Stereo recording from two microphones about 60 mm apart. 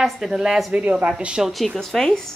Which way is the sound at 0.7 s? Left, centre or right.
Right.